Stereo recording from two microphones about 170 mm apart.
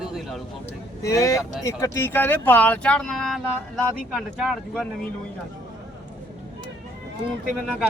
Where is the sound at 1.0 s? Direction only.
20° left (ahead or behind); by 5.1 s 5° left (ahead or behind).